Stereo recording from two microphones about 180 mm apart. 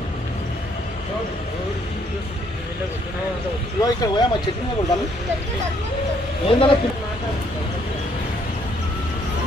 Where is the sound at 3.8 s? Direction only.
25° left (ahead or behind).